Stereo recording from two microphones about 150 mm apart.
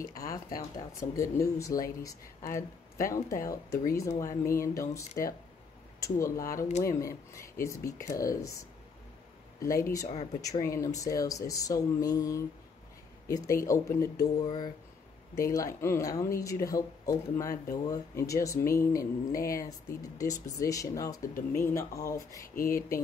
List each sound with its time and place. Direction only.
0.0 s speech: 20° left (ahead or behind)
9.6 s speech: 20° left (ahead or behind)